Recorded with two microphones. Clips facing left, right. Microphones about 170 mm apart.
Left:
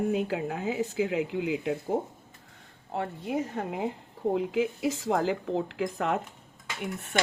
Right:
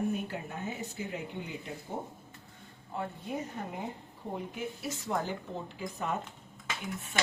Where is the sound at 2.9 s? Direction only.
80° left.